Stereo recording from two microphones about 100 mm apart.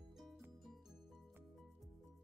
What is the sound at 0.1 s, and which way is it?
Music, centre (ahead or behind).